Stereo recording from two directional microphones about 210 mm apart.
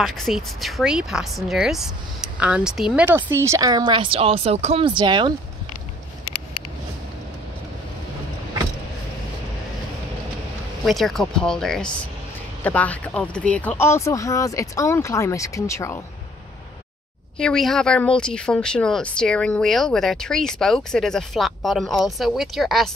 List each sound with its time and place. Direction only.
0.0 s speech: centre (ahead or behind); by 5.3 s 20° right (ahead or behind)
10.9 s speech: centre (ahead or behind)
17.4 s speech: centre (ahead or behind)